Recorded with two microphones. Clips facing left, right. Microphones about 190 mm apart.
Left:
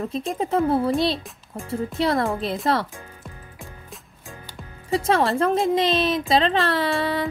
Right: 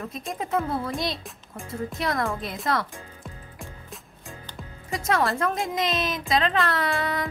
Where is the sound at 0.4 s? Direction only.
30° left (ahead or behind).